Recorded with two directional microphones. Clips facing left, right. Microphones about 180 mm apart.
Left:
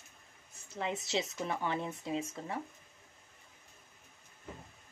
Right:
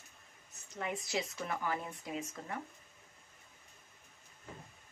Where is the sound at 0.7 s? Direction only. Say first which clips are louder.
Left 2 dB; 25° left (ahead or behind).